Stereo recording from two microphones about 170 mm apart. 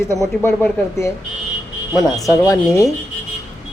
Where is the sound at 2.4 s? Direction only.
20° left (ahead or behind).